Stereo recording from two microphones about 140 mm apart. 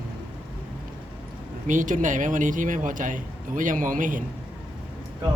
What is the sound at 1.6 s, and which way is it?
Speech, 65° right (ahead or behind).